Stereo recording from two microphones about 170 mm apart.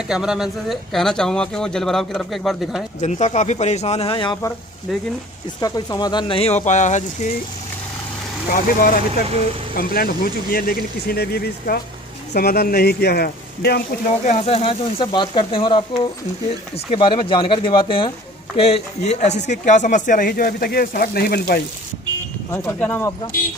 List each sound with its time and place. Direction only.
0.1 s speech: 5° right (ahead or behind)
3.0 s speech: 45° left (ahead or behind)
5.6 s speech: 25° left (ahead or behind); by 7.3 s 45° left (ahead or behind)
8.5 s speech: 55° left (ahead or behind)
14.2 s speech: 35° left (ahead or behind); by 21.5 s 60° left (ahead or behind)
22.5 s speech: 10° left (ahead or behind)